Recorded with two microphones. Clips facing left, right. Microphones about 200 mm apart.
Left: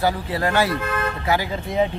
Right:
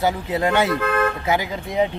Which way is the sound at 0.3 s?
20° right (ahead or behind).